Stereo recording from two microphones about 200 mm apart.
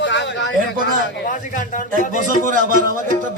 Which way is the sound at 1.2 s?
40° left (ahead or behind).